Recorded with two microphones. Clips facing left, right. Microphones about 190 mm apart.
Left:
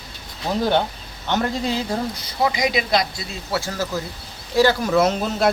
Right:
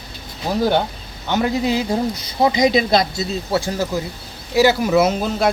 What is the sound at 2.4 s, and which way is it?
Speech, 25° right (ahead or behind).